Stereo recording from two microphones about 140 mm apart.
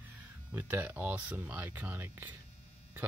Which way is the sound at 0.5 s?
15° right (ahead or behind).